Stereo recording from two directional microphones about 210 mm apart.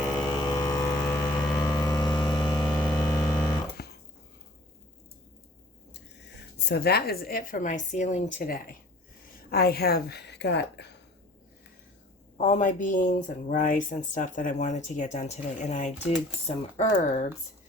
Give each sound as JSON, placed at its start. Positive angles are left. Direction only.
{"t": 0.1, "sound": "music", "side_deg": 15}
{"t": 1.5, "sound": "vehicle", "side_deg": 15}
{"t": 3.8, "sound": "a sound", "side_deg": 50}
{"t": 6.7, "sound": "a woman's voice", "side_deg": 50}
{"t": 12.4, "sound": "speech", "side_deg": 35}